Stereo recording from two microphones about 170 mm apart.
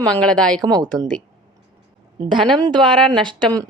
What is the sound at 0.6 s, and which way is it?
Speech, 20° right (ahead or behind).